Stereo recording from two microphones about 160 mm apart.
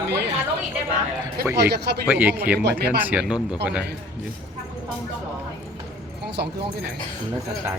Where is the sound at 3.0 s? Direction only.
10° right (ahead or behind).